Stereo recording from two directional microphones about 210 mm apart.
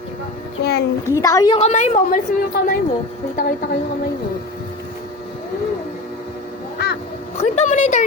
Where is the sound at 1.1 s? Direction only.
15° left (ahead or behind).